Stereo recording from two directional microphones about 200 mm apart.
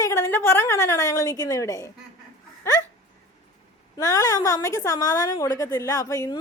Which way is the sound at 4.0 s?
15° left (ahead or behind).